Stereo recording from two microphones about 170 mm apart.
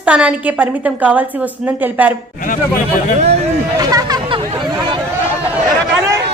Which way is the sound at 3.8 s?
20° right (ahead or behind).